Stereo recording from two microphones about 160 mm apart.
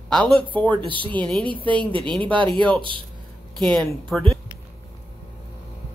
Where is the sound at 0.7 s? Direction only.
30° right (ahead or behind).